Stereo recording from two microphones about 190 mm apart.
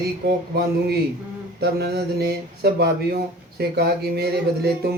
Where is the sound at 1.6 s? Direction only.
60° right (ahead or behind).